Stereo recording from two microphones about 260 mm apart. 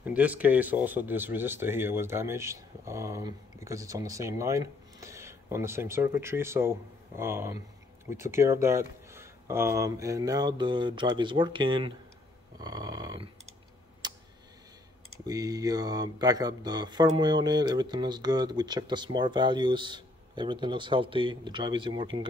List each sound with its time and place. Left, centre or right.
0.0 s speech: centre
12.5 s a sound: centre
14.0 s tick: centre
15.2 s speech: centre